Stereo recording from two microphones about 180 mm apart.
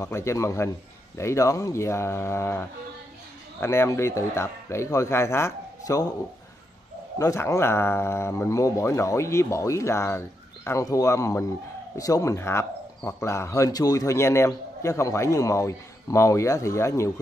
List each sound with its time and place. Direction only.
0.0 s speech: 15° left (ahead or behind)
7.2 s speech: 15° left (ahead or behind)